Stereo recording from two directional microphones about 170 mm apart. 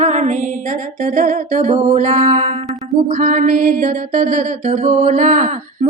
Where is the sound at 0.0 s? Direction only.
45° right (ahead or behind).